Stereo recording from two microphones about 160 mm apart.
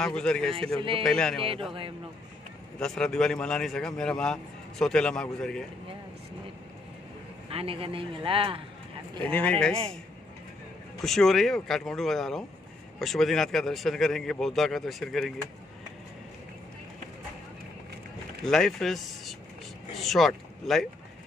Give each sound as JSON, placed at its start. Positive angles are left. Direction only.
{"t": 0.0, "sound": "a man's voice", "side_deg": 5}
{"t": 0.7, "sound": "a man's voice", "side_deg": -35}
{"t": 1.0, "sound": "a man's voice", "side_deg": 5}
{"t": 1.4, "sound": "a man's voice", "side_deg": -35}
{"t": 2.8, "sound": "a man's voice", "side_deg": 5}
{"t": 7.4, "sound": "a man's voice", "side_deg": -35}
{"t": 9.2, "sound": "speech", "side_deg": 10}
{"t": 11.0, "sound": "a man's voice", "side_deg": 0}
{"t": 18.4, "sound": "a man's voice", "side_deg": 0}